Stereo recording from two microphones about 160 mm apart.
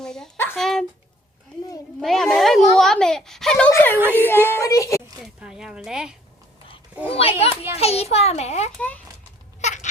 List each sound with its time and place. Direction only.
0.0 s a sound: 5° left (ahead or behind)
2.0 s speech: centre (ahead or behind)
2.7 s babbling: 5° left (ahead or behind)
3.7 s a sound: 15° left (ahead or behind)
3.9 s speech: 15° right (ahead or behind)
4.3 s speech: 15° left (ahead or behind)
5.2 s speech: 5° right (ahead or behind)
7.1 s a child's voice: 40° left (ahead or behind)
9.6 s goat: 45° left (ahead or behind)